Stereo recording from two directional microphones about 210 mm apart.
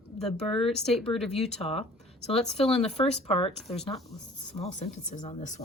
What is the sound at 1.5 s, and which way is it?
Speech, 30° left (ahead or behind).